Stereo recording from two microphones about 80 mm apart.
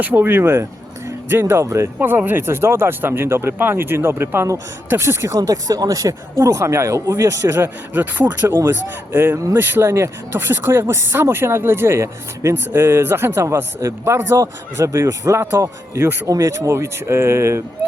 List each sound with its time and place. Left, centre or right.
0.0 s speech: right
5.4 s speech: right
7.5 s speech: right
8.4 s speech: right
9.1 s speech: right
16.3 s speech: right